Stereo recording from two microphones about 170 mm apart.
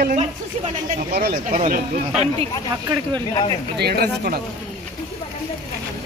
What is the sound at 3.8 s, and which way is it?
Speech, 65° right (ahead or behind).